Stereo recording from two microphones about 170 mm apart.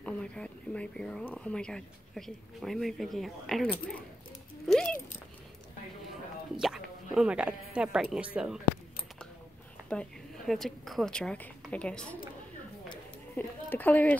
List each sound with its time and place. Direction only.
0.0 s speech: 5° left (ahead or behind)
4.6 s a sound: 5° left (ahead or behind)
6.5 s speech: 5° right (ahead or behind)
9.8 s a woman's voice: 5° left (ahead or behind)
13.4 s a woman's voice: 10° left (ahead or behind)